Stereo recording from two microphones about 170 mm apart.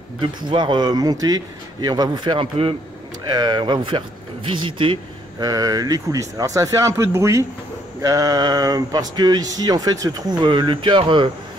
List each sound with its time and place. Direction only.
0.2 s speech: 30° right (ahead or behind)